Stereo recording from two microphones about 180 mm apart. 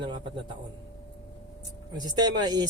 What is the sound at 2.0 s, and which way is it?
Speech, 25° right (ahead or behind).